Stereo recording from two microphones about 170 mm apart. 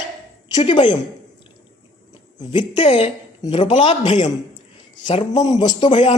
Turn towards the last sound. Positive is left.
turn(degrees=30)  # may be behind; listen again after turning